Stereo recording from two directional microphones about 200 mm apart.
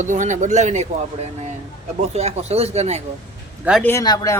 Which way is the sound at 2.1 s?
35° right (ahead or behind).